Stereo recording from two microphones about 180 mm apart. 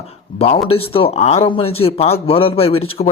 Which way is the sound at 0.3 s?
35° left (ahead or behind).